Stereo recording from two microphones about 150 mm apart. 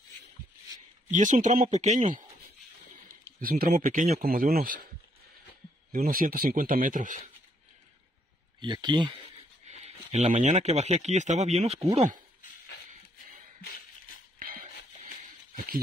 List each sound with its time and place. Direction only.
1.1 s speech: 55° right (ahead or behind)
3.3 s speech: 75° right (ahead or behind)
3.7 s speech: 60° right (ahead or behind); by 4.7 s 85° right
5.9 s speech: 70° right (ahead or behind)
8.5 s speech: 30° right (ahead or behind)
9.7 s speech: 50° right (ahead or behind)
13.6 s a sound: 75° left (ahead or behind)
14.4 s music: 65° right (ahead or behind)